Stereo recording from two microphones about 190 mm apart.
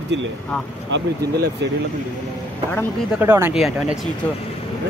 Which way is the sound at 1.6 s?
65° right (ahead or behind).